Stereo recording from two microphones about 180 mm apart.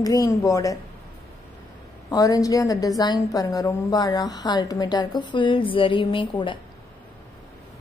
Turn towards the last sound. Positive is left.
turn(degrees=25)  # may be behind; listen again after turning